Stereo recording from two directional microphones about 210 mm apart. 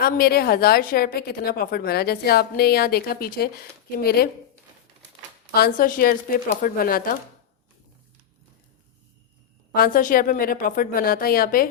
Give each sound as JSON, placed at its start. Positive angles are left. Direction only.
{"t": 0.0, "sound": "a woman's voice", "side_deg": 45}
{"t": 5.5, "sound": "a woman's voice", "side_deg": 45}
{"t": 9.7, "sound": "a woman's voice", "side_deg": 45}